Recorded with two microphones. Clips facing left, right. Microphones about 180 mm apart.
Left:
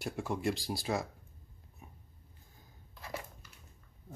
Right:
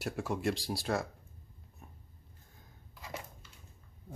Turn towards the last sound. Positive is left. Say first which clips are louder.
# left 1 dB
turn(degrees=-20)  # may be behind; listen again after turning